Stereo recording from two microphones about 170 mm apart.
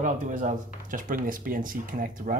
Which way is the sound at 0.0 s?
50° right (ahead or behind).